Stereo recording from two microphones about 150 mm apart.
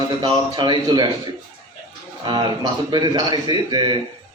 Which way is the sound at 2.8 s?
30° right (ahead or behind).